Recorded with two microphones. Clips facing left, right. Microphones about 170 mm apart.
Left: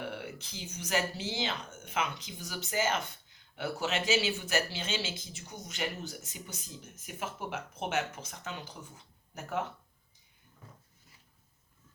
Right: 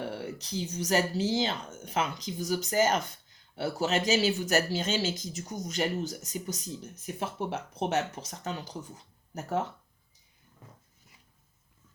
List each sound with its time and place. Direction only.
0.0 s speech: 35° right (ahead or behind)